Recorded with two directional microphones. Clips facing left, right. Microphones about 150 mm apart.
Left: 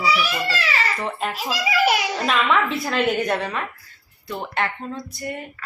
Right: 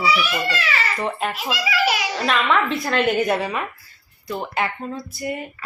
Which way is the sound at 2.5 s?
5° left (ahead or behind).